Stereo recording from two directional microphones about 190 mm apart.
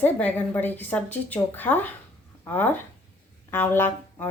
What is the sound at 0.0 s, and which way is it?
Speech, 10° left (ahead or behind).